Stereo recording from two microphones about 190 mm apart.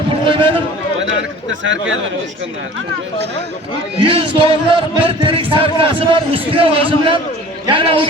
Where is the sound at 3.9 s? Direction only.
25° right (ahead or behind).